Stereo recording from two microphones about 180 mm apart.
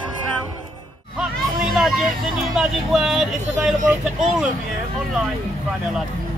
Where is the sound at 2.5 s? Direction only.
Centre (ahead or behind).